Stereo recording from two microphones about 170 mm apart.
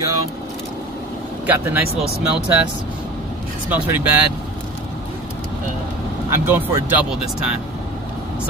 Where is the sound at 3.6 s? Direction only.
10° right (ahead or behind).